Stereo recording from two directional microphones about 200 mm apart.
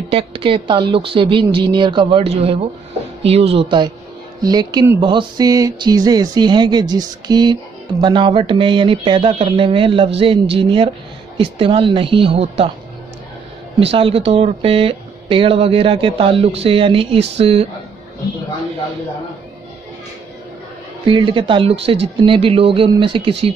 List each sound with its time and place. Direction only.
0.1 s speech: 30° right (ahead or behind)
13.7 s speech: 25° right (ahead or behind)
21.1 s speech: 25° right (ahead or behind)